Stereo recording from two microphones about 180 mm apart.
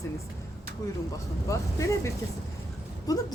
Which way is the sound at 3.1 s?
20° left (ahead or behind).